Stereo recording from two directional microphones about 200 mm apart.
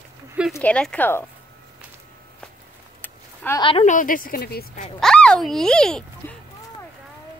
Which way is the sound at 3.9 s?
45° left (ahead or behind).